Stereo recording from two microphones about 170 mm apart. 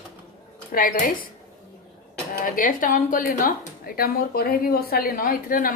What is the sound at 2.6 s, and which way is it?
A woman's voice, 55° left (ahead or behind).